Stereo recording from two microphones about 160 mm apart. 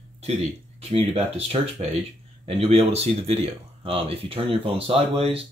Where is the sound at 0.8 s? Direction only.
40° right (ahead or behind).